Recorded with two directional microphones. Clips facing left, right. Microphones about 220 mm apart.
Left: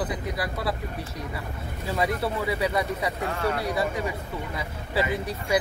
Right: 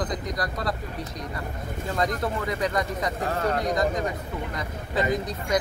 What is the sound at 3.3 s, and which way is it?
Speech, 40° right (ahead or behind).